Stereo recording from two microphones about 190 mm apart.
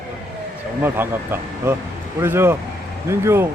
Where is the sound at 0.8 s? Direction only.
10° right (ahead or behind).